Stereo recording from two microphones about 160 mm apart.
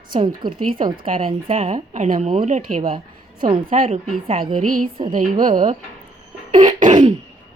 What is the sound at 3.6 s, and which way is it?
A woman's voice, 60° right (ahead or behind).